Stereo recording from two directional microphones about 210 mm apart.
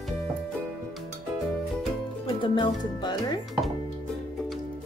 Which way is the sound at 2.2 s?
25° left (ahead or behind).